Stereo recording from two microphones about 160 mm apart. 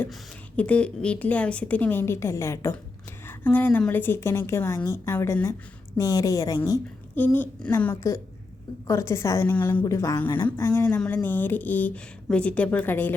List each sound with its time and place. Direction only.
0.1 s a woman's voice: 10° left (ahead or behind)